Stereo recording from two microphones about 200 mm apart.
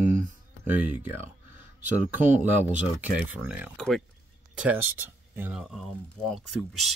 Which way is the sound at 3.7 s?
5° left (ahead or behind).